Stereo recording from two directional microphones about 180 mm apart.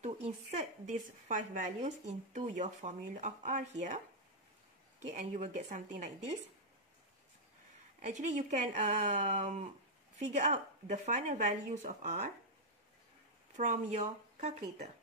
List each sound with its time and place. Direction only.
0.0 s speech: 40° right (ahead or behind)
5.0 s speech: 40° right (ahead or behind)
8.0 s speech: 40° right (ahead or behind)
13.6 s speech: 40° right (ahead or behind)